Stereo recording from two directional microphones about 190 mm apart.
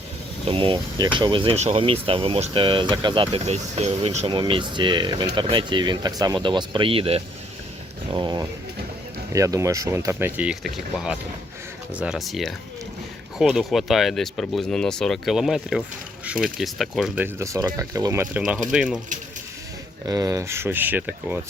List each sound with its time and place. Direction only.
0.4 s speech: 25° right (ahead or behind); by 17.2 s centre (ahead or behind)
17.2 s speech: 15° right (ahead or behind)
20.1 s speech: 15° right (ahead or behind)